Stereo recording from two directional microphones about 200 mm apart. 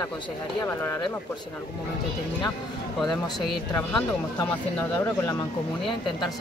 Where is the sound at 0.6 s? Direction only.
10° left (ahead or behind).